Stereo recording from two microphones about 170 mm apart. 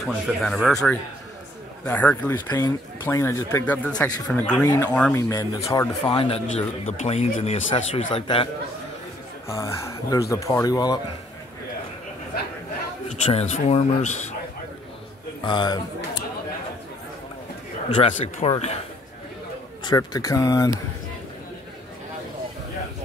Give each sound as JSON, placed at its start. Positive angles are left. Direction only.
{"t": 0.0, "sound": "speech", "side_deg": 0}
{"t": 4.6, "sound": "speech", "side_deg": 20}
{"t": 6.9, "sound": "speech", "side_deg": 40}
{"t": 9.5, "sound": "speech", "side_deg": 15}
{"t": 13.1, "sound": "speech", "side_deg": 40}
{"t": 15.4, "sound": "speech", "side_deg": 25}
{"t": 17.8, "sound": "speech", "side_deg": 35}
{"t": 19.8, "sound": "speech", "side_deg": 25}